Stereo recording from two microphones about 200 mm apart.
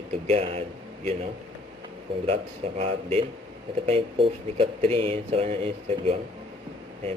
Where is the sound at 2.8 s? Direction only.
30° right (ahead or behind).